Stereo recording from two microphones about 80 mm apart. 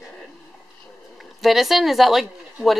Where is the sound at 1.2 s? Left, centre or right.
Centre.